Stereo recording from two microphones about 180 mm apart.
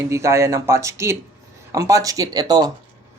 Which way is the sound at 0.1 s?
15° right (ahead or behind).